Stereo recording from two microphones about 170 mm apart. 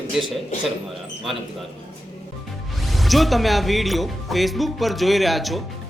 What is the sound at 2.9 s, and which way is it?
Speech, centre (ahead or behind).